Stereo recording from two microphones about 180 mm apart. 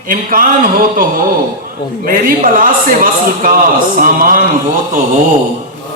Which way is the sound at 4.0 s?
50° right (ahead or behind).